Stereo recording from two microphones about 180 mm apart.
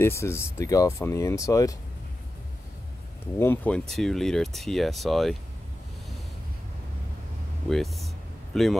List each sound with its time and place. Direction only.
0.0 s speech: 15° left (ahead or behind)
3.3 s speech: 10° left (ahead or behind)
7.7 s speech: centre (ahead or behind)